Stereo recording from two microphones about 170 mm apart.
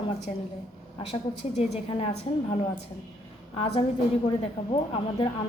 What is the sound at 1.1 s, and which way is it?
A woman's voice, 35° left (ahead or behind).